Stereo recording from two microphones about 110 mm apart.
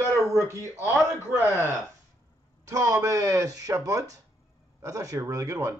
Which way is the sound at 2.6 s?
30° right (ahead or behind).